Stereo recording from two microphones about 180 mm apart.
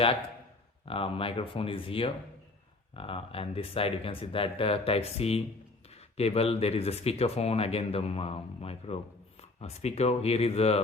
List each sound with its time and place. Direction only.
0.9 s speech: 30° left (ahead or behind)